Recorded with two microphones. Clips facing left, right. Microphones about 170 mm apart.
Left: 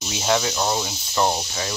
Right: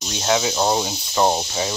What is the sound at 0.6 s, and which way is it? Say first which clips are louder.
Speech: right 4 dB; 25° right (ahead or behind).